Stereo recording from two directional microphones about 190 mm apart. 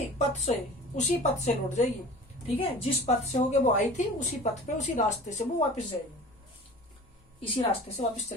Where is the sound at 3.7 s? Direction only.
40° left (ahead or behind).